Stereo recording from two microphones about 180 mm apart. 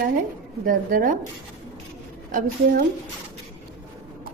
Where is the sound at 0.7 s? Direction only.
45° right (ahead or behind).